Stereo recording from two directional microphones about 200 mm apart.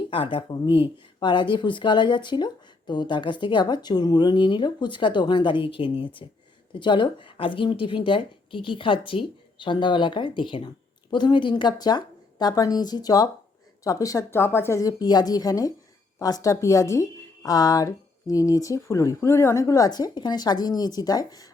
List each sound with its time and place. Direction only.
0.1 s speech: 25° left (ahead or behind)